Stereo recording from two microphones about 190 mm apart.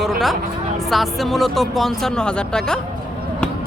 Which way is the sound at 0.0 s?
Centre (ahead or behind).